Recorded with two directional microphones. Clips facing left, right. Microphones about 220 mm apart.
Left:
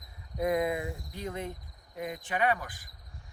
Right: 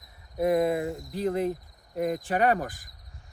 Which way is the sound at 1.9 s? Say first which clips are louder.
Right 8 dB; 40° right (ahead or behind).